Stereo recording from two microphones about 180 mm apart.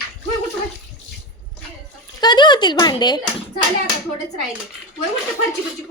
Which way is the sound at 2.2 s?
25° left (ahead or behind).